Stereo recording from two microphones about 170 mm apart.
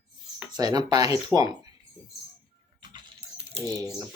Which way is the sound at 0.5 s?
25° right (ahead or behind).